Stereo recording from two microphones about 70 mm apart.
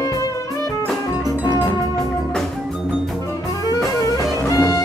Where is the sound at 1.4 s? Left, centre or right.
Left.